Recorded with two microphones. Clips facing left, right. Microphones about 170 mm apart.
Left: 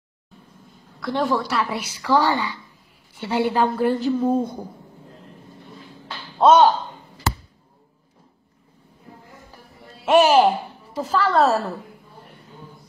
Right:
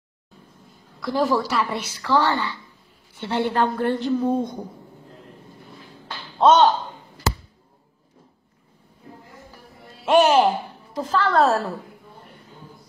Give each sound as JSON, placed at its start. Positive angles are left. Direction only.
{"t": 1.0, "sound": "a woman's voice", "side_deg": 0}
{"t": 6.3, "sound": "speech", "side_deg": 10}
{"t": 10.0, "sound": "a woman's voice", "side_deg": 0}